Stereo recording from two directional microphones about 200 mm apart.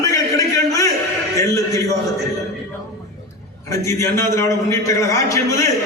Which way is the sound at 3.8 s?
15° left (ahead or behind).